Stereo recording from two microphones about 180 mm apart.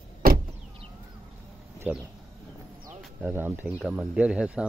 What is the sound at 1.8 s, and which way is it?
Speech, 5° right (ahead or behind).